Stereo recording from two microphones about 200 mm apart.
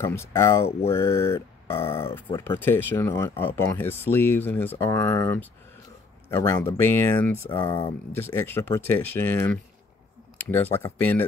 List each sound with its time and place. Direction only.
0.0 s speech: 15° left (ahead or behind)
1.8 s speech: 30° left (ahead or behind)
2.1 s speech: 10° left (ahead or behind)